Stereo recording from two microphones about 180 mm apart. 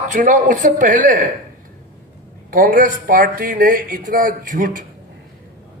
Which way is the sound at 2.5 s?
50° right (ahead or behind).